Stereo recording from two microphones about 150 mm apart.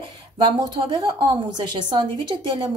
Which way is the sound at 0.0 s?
30° right (ahead or behind).